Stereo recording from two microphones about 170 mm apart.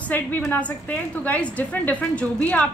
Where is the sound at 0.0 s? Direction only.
10° left (ahead or behind).